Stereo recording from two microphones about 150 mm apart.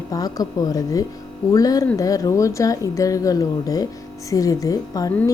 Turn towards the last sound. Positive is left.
turn(degrees=25)  # may be behind; listen again after turning